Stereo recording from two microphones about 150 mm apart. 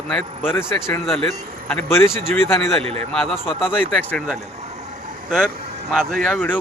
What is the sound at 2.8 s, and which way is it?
Speech, 40° right (ahead or behind).